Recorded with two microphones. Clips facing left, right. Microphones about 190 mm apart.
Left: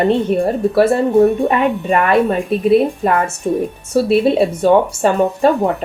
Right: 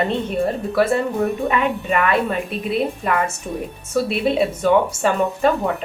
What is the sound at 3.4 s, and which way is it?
Speech, 35° left (ahead or behind).